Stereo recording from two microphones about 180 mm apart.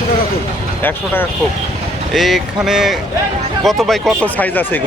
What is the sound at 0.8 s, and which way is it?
Speech, 10° left (ahead or behind).